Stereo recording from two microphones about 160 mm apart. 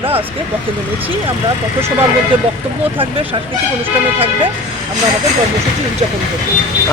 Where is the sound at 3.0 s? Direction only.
35° right (ahead or behind).